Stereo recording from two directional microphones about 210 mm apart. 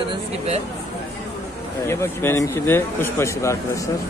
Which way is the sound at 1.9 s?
10° left (ahead or behind).